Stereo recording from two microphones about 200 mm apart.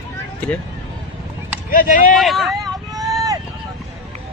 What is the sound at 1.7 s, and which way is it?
Speech, 45° left (ahead or behind).